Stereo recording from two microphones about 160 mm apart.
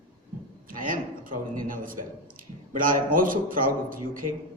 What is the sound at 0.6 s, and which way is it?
A man's voice, 60° right (ahead or behind).